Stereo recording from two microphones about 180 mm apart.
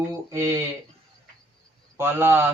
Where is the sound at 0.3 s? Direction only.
15° right (ahead or behind).